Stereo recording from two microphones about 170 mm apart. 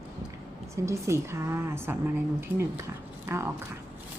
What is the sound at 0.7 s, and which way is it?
A woman's voice, 15° right (ahead or behind).